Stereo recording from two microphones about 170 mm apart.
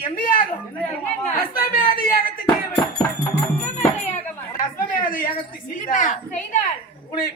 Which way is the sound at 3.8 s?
50° left (ahead or behind).